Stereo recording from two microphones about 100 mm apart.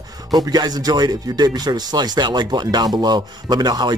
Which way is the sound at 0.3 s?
45° right (ahead or behind).